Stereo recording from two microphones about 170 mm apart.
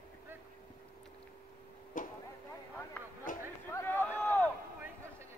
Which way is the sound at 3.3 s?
50° left (ahead or behind).